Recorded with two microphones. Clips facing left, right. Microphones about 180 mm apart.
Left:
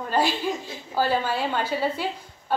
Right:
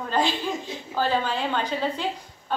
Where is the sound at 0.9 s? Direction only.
10° left (ahead or behind).